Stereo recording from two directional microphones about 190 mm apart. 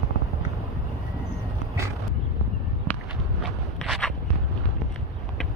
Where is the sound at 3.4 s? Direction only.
Centre (ahead or behind).